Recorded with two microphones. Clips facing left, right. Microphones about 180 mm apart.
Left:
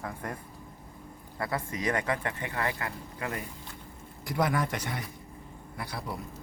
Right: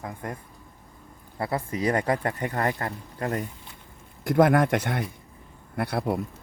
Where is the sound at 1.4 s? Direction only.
30° right (ahead or behind).